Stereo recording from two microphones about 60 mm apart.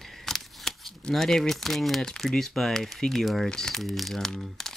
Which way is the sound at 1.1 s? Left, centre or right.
Centre.